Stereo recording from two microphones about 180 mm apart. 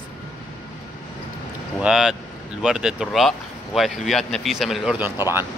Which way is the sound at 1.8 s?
5° right (ahead or behind).